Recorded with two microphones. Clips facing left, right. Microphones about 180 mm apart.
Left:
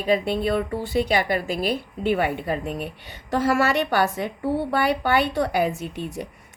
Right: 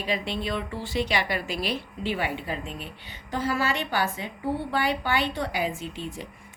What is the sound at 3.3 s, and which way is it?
A woman's voice, 75° left (ahead or behind).